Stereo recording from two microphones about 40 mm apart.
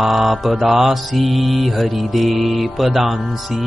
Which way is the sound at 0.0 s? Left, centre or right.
Centre.